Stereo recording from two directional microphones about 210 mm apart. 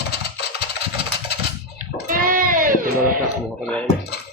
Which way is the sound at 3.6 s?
5° left (ahead or behind).